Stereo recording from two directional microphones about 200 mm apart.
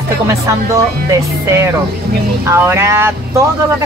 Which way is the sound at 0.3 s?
15° right (ahead or behind).